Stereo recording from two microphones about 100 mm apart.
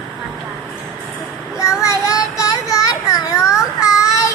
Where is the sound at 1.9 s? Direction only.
35° left (ahead or behind).